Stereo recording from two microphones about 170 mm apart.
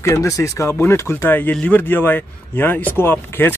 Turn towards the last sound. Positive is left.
turn(degrees=15)  # may be behind; listen again after turning